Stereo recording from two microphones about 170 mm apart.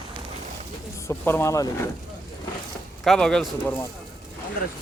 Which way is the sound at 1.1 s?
15° left (ahead or behind).